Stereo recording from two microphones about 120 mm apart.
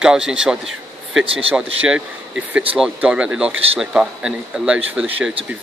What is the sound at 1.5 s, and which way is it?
Speech, 10° right (ahead or behind).